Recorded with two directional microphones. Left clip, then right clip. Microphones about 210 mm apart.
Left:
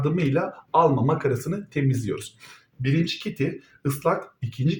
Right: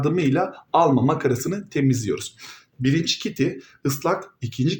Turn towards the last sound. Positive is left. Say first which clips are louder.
# right 4 dB
turn(degrees=-40)  # may be behind; listen again after turning